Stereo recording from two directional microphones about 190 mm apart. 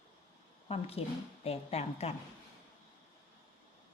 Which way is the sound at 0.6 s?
30° left (ahead or behind).